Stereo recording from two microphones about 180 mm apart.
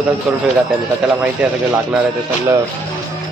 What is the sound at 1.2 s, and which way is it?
Speech, 5° right (ahead or behind).